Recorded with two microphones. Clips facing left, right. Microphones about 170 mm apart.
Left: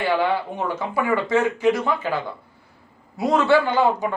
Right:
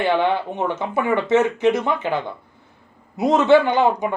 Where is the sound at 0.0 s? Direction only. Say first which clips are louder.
Right 2 dB; 20° right (ahead or behind).